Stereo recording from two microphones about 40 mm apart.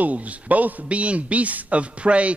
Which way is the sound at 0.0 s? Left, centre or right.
Right.